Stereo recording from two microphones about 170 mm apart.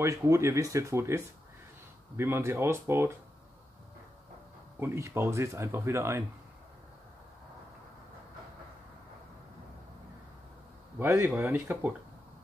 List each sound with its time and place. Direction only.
0.0 s speech: 15° right (ahead or behind)
4.7 s speech: 15° right (ahead or behind)
11.0 s speech: 15° right (ahead or behind)